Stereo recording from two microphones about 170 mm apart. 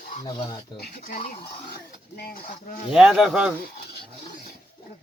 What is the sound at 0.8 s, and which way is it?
A woman's voice, 55° left (ahead or behind).